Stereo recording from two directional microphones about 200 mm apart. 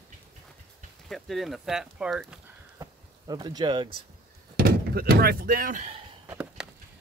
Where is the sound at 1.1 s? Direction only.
Centre (ahead or behind).